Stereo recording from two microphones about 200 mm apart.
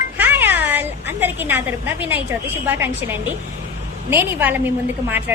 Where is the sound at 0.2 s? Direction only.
10° right (ahead or behind).